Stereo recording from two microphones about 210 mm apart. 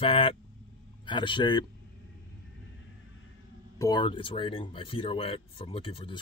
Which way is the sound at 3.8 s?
20° left (ahead or behind).